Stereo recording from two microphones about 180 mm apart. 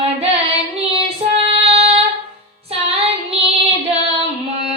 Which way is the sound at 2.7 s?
35° right (ahead or behind).